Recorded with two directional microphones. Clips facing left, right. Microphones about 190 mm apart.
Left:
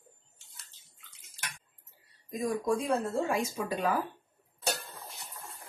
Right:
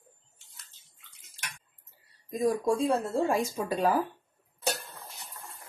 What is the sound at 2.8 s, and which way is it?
Speech, 30° right (ahead or behind).